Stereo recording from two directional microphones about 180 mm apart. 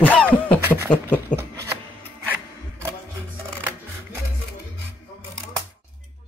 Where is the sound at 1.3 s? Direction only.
15° right (ahead or behind).